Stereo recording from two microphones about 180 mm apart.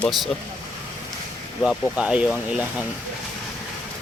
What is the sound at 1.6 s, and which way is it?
Speech, 5° right (ahead or behind).